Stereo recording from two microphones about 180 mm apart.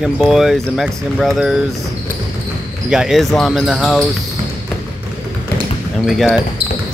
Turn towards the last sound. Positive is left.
turn(degrees=0)  # may be behind; listen again after turning